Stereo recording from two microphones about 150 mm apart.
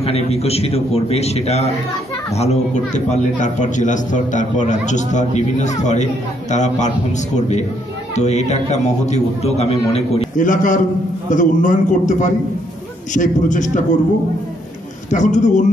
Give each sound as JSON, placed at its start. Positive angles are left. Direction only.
{"t": 0.0, "sound": "a man's voice", "side_deg": 45}
{"t": 15.0, "sound": "a man's voice", "side_deg": 55}